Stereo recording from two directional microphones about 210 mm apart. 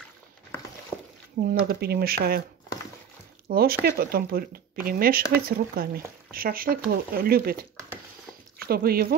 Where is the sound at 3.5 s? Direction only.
45° right (ahead or behind).